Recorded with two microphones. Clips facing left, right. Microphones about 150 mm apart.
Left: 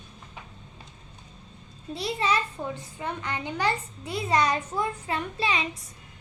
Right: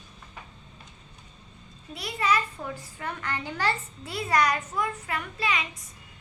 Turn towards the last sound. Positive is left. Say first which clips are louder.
# left 2 dB
turn(degrees=30)  # may be behind; listen again after turning